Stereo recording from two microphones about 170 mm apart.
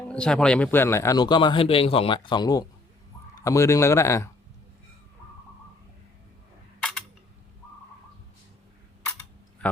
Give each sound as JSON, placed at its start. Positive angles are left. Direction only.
{"t": 0.1, "sound": "speech", "side_deg": 5}